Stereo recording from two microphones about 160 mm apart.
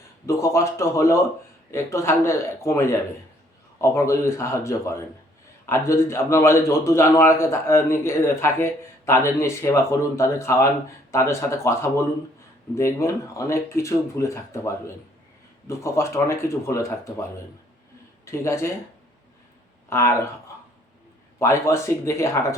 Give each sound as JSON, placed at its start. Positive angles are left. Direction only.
{"t": 0.3, "sound": "a man's voice", "side_deg": 20}
{"t": 19.9, "sound": "a man's voice", "side_deg": 15}
{"t": 21.3, "sound": "a man's voice", "side_deg": 15}